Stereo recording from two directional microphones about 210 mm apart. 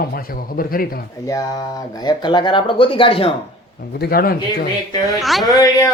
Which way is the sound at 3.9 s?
50° left (ahead or behind).